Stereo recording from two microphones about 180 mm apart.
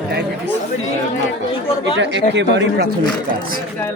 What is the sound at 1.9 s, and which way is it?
Speech, 80° right.